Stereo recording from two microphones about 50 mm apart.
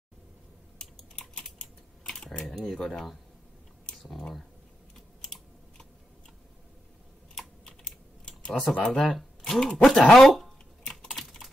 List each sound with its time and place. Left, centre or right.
2.0 s speech: centre
4.9 s typing: centre
8.5 s speech: centre
9.8 s a sound: centre
11.1 s typing: centre